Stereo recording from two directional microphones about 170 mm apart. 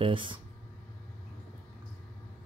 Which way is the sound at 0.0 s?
30° right (ahead or behind).